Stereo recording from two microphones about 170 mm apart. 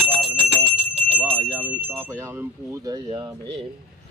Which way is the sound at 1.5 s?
10° right (ahead or behind).